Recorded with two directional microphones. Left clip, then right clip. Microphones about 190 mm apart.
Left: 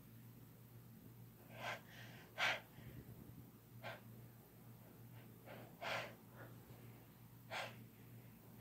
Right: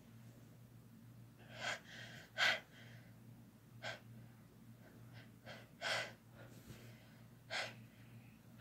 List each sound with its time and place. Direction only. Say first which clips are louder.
1.6 s gasp: right 4 dB; 20° right (ahead or behind)
3.8 s breathing: right 4 dB; 20° right (ahead or behind)
5.8 s gasp: right 4 dB; 20° right (ahead or behind)
7.4 s gasp: right 4 dB; 20° right (ahead or behind)